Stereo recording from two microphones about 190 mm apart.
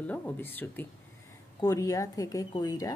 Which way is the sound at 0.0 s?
10° left (ahead or behind).